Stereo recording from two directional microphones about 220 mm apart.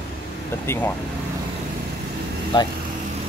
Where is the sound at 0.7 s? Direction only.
10° left (ahead or behind).